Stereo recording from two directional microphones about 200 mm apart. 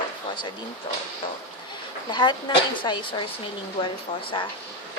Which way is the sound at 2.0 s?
20° left (ahead or behind).